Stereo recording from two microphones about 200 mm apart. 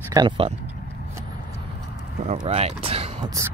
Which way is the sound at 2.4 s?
30° right (ahead or behind).